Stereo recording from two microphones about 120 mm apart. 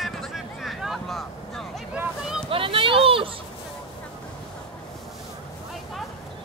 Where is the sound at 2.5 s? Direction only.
50° right (ahead or behind).